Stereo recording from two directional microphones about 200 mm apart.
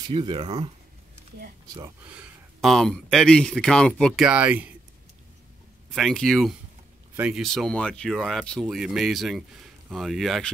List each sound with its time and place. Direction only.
0.0 s speech: 25° right (ahead or behind)
1.8 s speech: 5° right (ahead or behind)
5.9 s speech: centre (ahead or behind)